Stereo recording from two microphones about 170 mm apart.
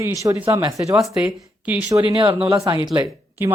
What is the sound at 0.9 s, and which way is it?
Speech, 5° right (ahead or behind).